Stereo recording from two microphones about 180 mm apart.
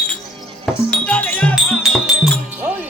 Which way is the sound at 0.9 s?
5° left (ahead or behind).